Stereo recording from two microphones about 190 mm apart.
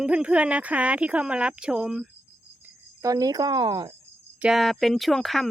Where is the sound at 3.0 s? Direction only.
20° right (ahead or behind).